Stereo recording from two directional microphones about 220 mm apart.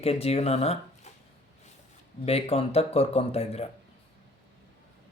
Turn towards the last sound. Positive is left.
turn(degrees=30)  # may be behind; listen again after turning